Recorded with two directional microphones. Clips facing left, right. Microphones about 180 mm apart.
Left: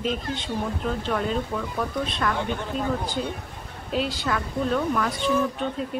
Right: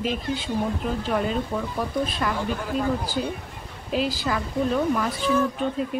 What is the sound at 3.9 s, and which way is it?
Speech, centre (ahead or behind).